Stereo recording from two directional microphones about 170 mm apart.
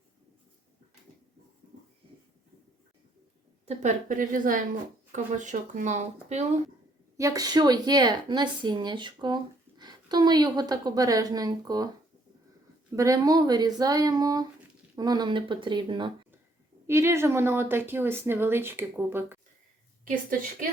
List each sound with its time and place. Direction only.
3.7 s speech: 45° right (ahead or behind)
7.2 s speech: 20° right (ahead or behind)
13.0 s speech: 20° right (ahead or behind)
16.8 s speech: 15° right (ahead or behind)